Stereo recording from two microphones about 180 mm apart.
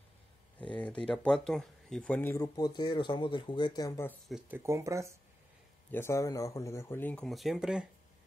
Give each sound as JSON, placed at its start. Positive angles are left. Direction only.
{"t": 0.7, "sound": "speech", "side_deg": 5}
{"t": 4.1, "sound": "speech", "side_deg": -5}
{"t": 5.9, "sound": "speech", "side_deg": 15}